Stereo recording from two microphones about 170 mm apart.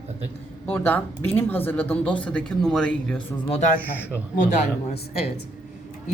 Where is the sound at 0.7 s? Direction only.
10° left (ahead or behind).